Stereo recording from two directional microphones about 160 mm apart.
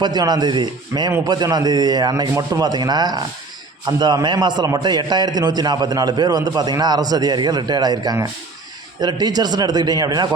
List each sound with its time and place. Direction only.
0.0 s a man's voice: 25° right (ahead or behind)